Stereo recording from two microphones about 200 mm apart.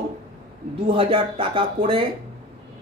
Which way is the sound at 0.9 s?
25° right (ahead or behind).